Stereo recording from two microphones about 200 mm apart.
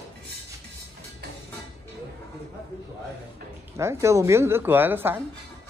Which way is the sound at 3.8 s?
15° right (ahead or behind).